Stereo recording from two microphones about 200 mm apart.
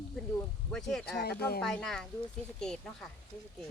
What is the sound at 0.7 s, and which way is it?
Speech, 5° left (ahead or behind).